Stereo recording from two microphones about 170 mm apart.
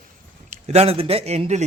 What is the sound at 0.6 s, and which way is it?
Speech, 35° right (ahead or behind).